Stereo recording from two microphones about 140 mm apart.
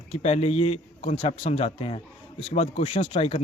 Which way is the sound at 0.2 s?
50° left (ahead or behind).